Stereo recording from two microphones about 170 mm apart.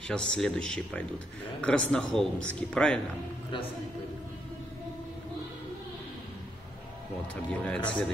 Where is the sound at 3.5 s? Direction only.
30° left (ahead or behind).